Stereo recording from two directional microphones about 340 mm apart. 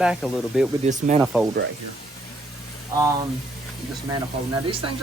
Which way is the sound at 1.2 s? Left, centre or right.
Centre.